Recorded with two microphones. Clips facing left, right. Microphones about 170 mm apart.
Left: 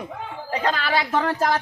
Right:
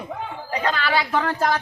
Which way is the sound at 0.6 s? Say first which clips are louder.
Even; 40° left (ahead or behind).